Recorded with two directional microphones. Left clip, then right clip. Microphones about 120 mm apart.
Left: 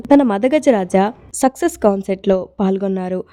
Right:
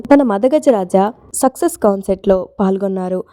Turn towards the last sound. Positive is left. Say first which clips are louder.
# right 2 dB
turn(degrees=-55)  # may be behind; listen again after turning